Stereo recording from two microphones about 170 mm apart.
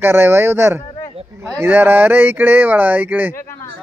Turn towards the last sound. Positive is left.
turn(degrees=15)  # may be behind; listen again after turning